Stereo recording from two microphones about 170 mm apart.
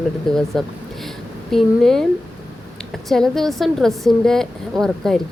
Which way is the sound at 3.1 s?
Centre (ahead or behind).